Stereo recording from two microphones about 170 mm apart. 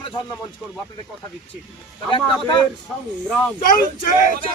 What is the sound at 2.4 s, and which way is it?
Speech, 30° left (ahead or behind).